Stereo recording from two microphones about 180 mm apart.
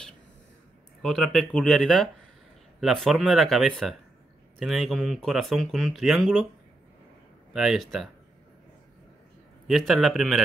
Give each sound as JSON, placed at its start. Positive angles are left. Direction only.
{"t": 1.0, "sound": "speech", "side_deg": 0}
{"t": 7.5, "sound": "speech", "side_deg": 0}
{"t": 9.7, "sound": "speech", "side_deg": 0}